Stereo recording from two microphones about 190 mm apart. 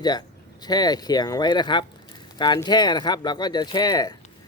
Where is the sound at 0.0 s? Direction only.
20° left (ahead or behind).